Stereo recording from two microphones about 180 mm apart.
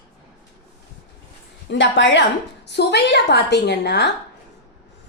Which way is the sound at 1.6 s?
85° left.